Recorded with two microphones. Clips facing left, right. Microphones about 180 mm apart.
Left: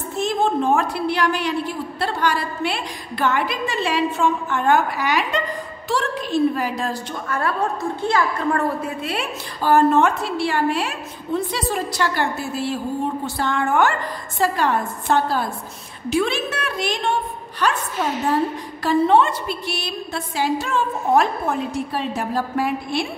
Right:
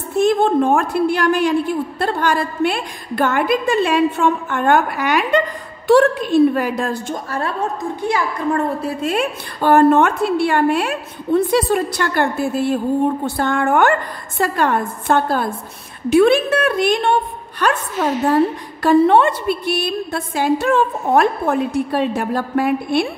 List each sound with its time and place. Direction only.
0.2 s a woman's voice: 55° right (ahead or behind)
7.2 s a woman's voice: 30° right (ahead or behind)
8.0 s a woman's voice: 15° right (ahead or behind)
8.8 s a woman's voice: 45° right (ahead or behind)
18.8 s a woman's voice: 60° right (ahead or behind)